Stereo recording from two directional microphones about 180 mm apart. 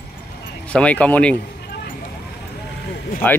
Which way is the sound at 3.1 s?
55° left (ahead or behind).